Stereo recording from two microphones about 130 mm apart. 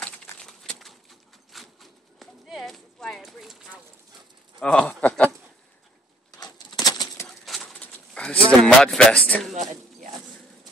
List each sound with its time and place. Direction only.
0.4 s a sound: 5° left (ahead or behind)
1.5 s horse: centre (ahead or behind)
4.6 s speech: 5° left (ahead or behind)
6.4 s bird flight: 30° left (ahead or behind)
7.2 s bird: centre (ahead or behind)
7.6 s pigeon: 10° left (ahead or behind)
8.5 s speech: 5° left (ahead or behind)
9.5 s a sound: 65° right (ahead or behind)